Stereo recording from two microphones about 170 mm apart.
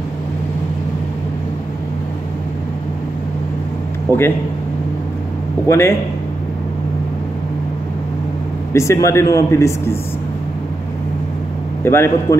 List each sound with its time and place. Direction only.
4.1 s a man's voice: 20° right (ahead or behind)
5.7 s a man's voice: 15° left (ahead or behind)
8.7 s a man's voice: 15° left (ahead or behind)
11.8 s a man's voice: 15° left (ahead or behind)